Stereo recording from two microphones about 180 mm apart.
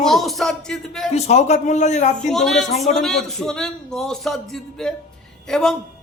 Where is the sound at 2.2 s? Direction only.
Centre (ahead or behind).